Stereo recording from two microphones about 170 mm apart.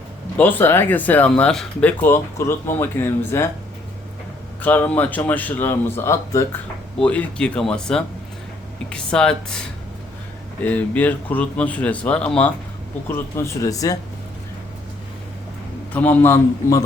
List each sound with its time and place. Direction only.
0.3 s speech: 10° left (ahead or behind)
4.6 s speech: 10° left (ahead or behind)
10.6 s speech: 10° left (ahead or behind)
15.9 s speech: 10° left (ahead or behind)